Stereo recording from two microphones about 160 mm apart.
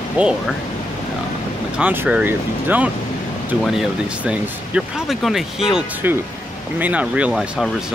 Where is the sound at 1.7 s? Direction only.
10° right (ahead or behind).